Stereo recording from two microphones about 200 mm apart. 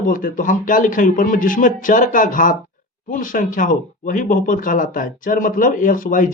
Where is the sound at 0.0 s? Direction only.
40° left (ahead or behind).